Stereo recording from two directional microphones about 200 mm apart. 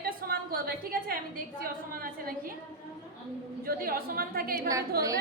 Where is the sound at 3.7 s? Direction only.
45° right (ahead or behind).